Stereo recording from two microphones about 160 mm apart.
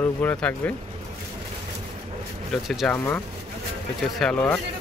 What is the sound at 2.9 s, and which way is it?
Speech, 10° left (ahead or behind).